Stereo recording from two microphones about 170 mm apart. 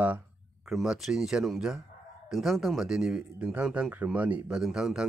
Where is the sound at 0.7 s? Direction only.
Centre (ahead or behind).